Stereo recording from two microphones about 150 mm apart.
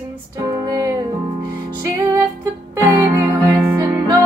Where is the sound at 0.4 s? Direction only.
25° right (ahead or behind).